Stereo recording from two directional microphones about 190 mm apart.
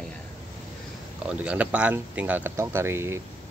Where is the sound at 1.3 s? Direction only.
5° right (ahead or behind).